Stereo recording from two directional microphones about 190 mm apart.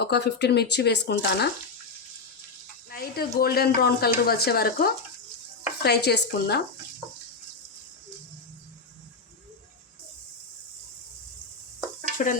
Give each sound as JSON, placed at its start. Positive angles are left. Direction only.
{"t": 0.0, "sound": "speech", "side_deg": 60}
{"t": 2.9, "sound": "speech", "side_deg": 55}
{"t": 12.1, "sound": "stir", "side_deg": 45}